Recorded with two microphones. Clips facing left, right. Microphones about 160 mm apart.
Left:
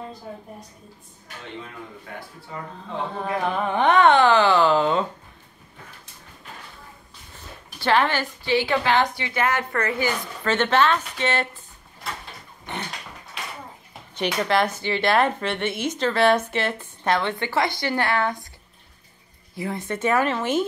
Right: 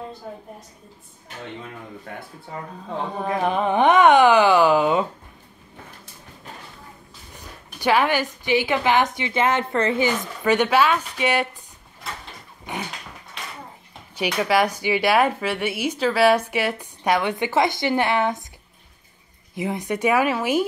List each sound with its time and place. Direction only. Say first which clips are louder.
3.4 s speech: right 3 dB; 15° right (ahead or behind)
7.3 s speech: right 1 dB; 15° right (ahead or behind)
12.6 s a sound: right 2 dB; 10° right (ahead or behind)
14.1 s speech: right 2 dB; 10° right (ahead or behind)
19.5 s speech: right 3 dB; 20° right (ahead or behind)